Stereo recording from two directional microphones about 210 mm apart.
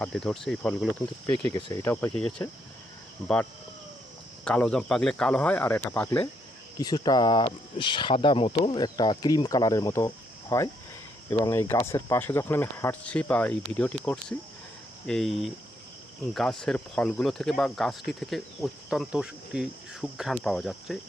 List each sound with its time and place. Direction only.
0.0 s speech: 5° left (ahead or behind)
1.5 s speech: 20° left (ahead or behind)
4.4 s speech: 5° left (ahead or behind)